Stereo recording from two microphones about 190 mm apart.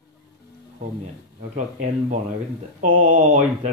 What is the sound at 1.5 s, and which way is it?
Speech, 40° right (ahead or behind).